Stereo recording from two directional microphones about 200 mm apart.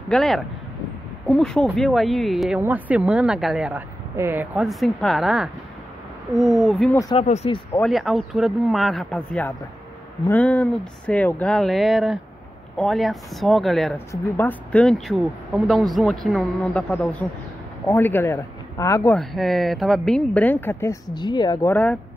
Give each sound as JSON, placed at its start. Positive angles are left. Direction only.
{"t": 0.1, "sound": "speech", "side_deg": 0}
{"t": 7.2, "sound": "speech", "side_deg": 30}
{"t": 7.8, "sound": "speech", "side_deg": 0}
{"t": 19.1, "sound": "speech", "side_deg": 0}